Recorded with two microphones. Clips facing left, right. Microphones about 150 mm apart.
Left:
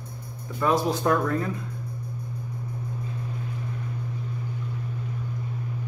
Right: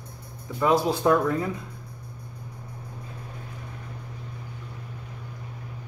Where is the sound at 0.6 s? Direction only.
15° right (ahead or behind).